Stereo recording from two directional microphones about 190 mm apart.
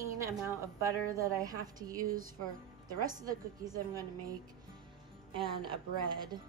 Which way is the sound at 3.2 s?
20° right (ahead or behind).